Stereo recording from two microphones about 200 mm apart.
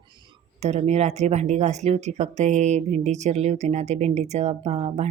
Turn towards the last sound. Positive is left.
turn(degrees=-30)  # may be behind; listen again after turning